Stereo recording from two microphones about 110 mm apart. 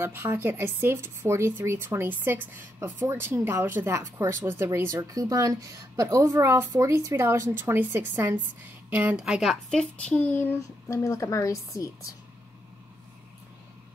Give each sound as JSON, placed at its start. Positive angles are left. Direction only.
{"t": 0.0, "sound": "speech", "side_deg": -20}
{"t": 10.9, "sound": "a woman's voice", "side_deg": 25}